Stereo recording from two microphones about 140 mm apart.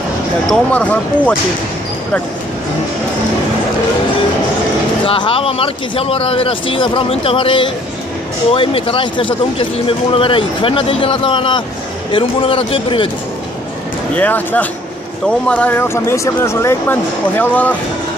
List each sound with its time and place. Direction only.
0.5 s speech: 10° left (ahead or behind)
5.0 s speech: 40° left (ahead or behind)
14.1 s speech: 10° left (ahead or behind)